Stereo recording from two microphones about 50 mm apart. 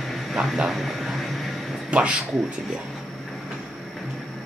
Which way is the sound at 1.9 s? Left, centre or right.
Right.